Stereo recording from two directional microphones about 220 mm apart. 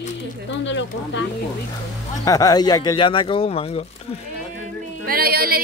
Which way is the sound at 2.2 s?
15° left (ahead or behind).